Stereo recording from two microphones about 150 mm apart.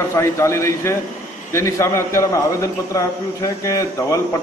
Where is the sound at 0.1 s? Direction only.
20° left (ahead or behind).